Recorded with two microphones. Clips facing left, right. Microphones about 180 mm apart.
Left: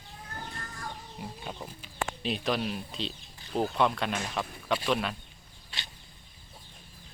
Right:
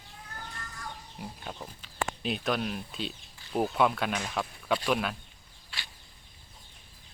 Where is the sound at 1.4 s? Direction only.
5° left (ahead or behind).